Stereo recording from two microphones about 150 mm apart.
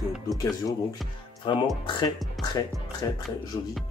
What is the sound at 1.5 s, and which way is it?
Speech, 35° left (ahead or behind).